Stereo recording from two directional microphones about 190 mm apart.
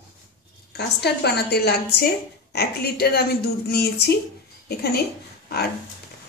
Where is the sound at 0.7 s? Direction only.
60° left (ahead or behind).